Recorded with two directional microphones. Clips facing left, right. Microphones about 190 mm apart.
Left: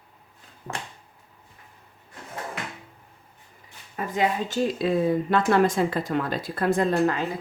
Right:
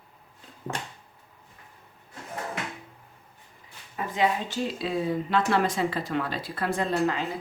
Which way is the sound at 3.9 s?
45° left (ahead or behind).